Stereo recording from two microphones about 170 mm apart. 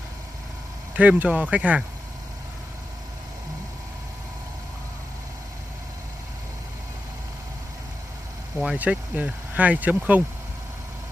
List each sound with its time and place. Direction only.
0.9 s speech: 10° right (ahead or behind)
8.5 s speech: 5° right (ahead or behind)